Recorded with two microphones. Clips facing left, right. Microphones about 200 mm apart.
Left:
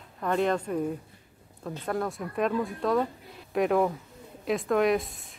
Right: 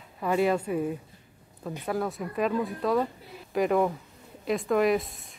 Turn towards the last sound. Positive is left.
turn(degrees=0)  # may be behind; listen again after turning